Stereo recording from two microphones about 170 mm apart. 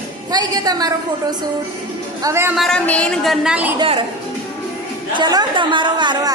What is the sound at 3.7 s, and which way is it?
Speech, 35° right (ahead or behind).